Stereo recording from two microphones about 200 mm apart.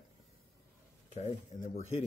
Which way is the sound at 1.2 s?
35° left (ahead or behind).